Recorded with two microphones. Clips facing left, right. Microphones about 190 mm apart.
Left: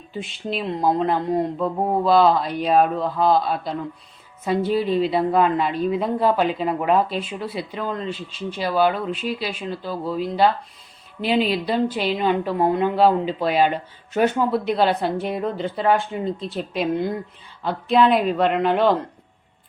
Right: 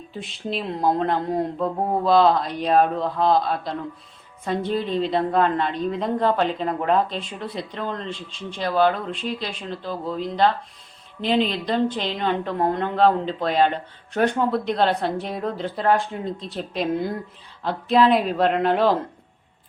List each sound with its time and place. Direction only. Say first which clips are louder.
0.1 s a woman's voice: left 2 dB; centre (ahead or behind)